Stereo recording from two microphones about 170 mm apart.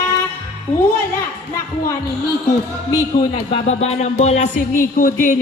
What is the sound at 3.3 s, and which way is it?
Speech, 40° left (ahead or behind).